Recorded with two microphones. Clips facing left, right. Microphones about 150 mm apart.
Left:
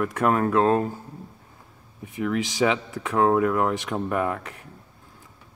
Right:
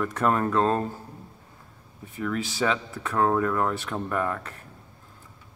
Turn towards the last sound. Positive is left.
turn(degrees=15)  # may be behind; listen again after turning